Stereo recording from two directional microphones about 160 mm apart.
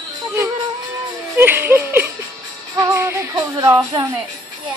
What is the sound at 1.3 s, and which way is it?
Speech, 15° right (ahead or behind).